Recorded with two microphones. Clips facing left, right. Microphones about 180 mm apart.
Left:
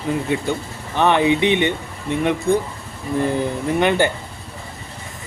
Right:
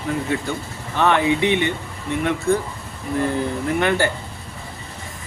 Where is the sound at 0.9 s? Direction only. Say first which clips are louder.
Left 2 dB; 15° left (ahead or behind).